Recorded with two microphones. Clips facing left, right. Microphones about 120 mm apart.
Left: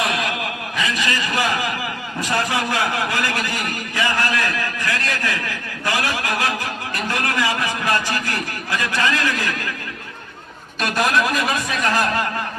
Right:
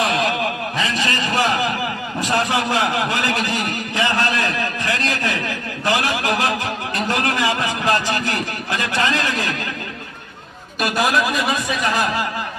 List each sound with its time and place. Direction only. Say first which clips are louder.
0.0 s a sound: right 4 dB; 30° right (ahead or behind)
2.2 s a man's voice: right 2 dB; 25° right (ahead or behind)
10.8 s speech: right 1 dB; 5° right (ahead or behind)